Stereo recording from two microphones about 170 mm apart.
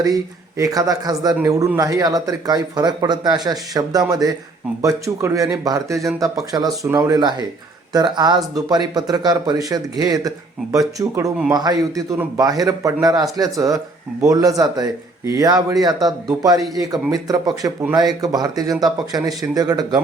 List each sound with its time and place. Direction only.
0.0 s speech: 20° right (ahead or behind)